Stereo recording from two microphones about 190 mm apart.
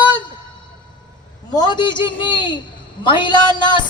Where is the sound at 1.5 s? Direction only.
25° left (ahead or behind).